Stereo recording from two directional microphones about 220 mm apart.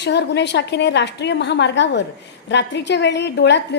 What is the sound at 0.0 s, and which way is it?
A woman's voice, 50° left (ahead or behind).